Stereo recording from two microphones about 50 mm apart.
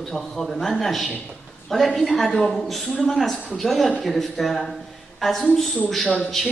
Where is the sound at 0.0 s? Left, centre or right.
Centre.